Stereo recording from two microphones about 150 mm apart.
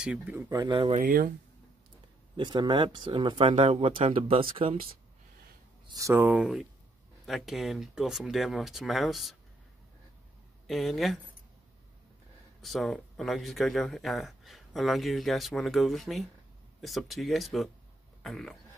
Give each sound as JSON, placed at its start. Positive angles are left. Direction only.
{"t": 0.0, "sound": "speech", "side_deg": -10}
{"t": 0.6, "sound": "speech", "side_deg": -35}
{"t": 0.9, "sound": "speech", "side_deg": -65}
{"t": 2.3, "sound": "speech", "side_deg": -30}
{"t": 5.9, "sound": "speech", "side_deg": -20}
{"t": 6.4, "sound": "speech", "side_deg": 0}
{"t": 10.7, "sound": "speech", "side_deg": 0}
{"t": 12.6, "sound": "speech", "side_deg": 0}